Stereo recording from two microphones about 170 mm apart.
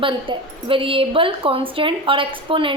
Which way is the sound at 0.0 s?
30° right (ahead or behind).